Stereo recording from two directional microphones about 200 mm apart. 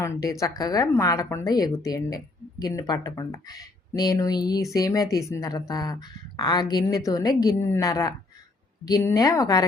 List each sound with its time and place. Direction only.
0.0 s a woman's voice: 15° left (ahead or behind)